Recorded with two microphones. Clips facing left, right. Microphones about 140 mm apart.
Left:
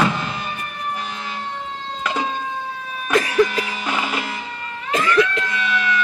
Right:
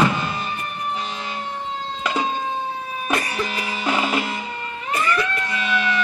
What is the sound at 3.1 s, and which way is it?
Cough, 90° left.